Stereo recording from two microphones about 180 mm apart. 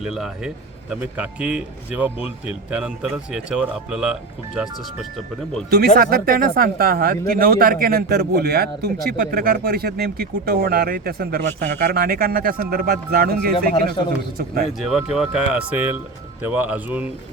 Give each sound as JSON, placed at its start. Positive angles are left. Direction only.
{"t": 0.0, "sound": "a man's voice", "side_deg": 0}
{"t": 6.0, "sound": "speech", "side_deg": -55}
{"t": 13.8, "sound": "a man's voice", "side_deg": 25}
{"t": 14.7, "sound": "a man's voice", "side_deg": 0}